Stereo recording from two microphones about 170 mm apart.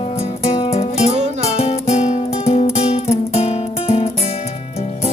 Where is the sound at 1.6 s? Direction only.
40° left (ahead or behind).